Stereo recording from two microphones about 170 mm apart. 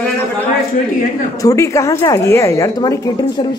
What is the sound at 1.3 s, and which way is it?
A woman's voice, 20° left (ahead or behind).